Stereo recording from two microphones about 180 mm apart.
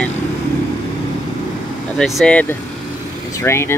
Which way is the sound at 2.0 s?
5° left (ahead or behind).